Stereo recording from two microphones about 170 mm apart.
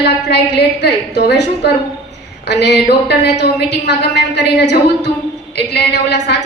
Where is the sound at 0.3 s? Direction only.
90° left.